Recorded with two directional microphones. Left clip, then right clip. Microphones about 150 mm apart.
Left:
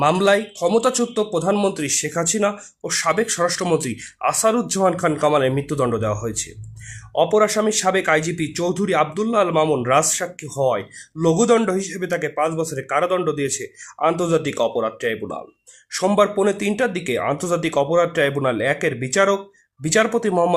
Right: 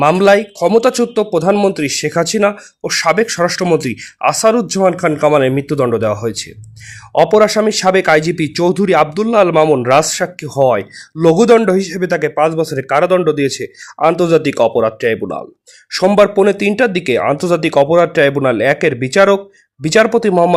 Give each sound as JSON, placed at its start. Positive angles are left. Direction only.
{"t": 0.0, "sound": "speech", "side_deg": -30}